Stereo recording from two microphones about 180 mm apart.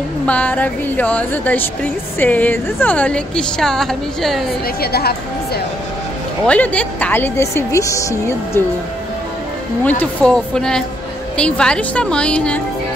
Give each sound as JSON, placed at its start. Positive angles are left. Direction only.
{"t": 0.3, "sound": "speech", "side_deg": 10}
{"t": 4.7, "sound": "a woman's voice", "side_deg": 60}
{"t": 6.4, "sound": "speech", "side_deg": 5}
{"t": 9.8, "sound": "a woman's voice", "side_deg": 5}